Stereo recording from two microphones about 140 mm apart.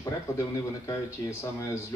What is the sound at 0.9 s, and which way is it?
Speech, 20° left (ahead or behind).